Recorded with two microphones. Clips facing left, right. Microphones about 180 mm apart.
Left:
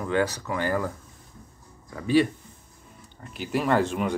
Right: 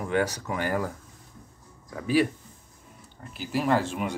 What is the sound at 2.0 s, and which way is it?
Speech, 5° right (ahead or behind).